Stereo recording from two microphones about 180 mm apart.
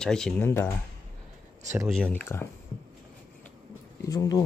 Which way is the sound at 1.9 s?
5° left (ahead or behind).